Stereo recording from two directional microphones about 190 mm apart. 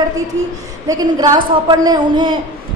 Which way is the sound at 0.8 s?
20° right (ahead or behind).